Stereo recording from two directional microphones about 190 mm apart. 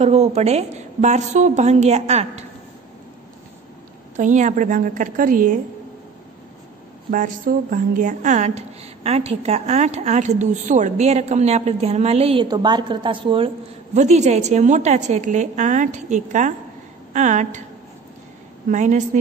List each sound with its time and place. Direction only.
0.0 s a woman's voice: 35° right (ahead or behind)
4.2 s a woman's voice: 40° right (ahead or behind)
7.1 s a woman's voice: 45° right (ahead or behind); by 13.5 s 25° right (ahead or behind)
13.9 s a woman's voice: 35° right (ahead or behind)
18.7 s a woman's voice: 40° right (ahead or behind)